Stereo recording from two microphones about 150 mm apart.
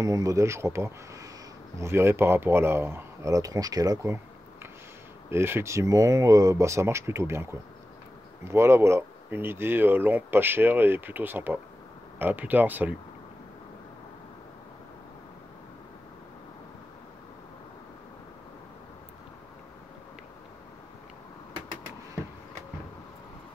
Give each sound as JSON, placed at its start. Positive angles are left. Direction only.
{"t": 0.0, "sound": "speech", "side_deg": -25}
{"t": 5.3, "sound": "speech", "side_deg": -15}
{"t": 8.5, "sound": "speech", "side_deg": -15}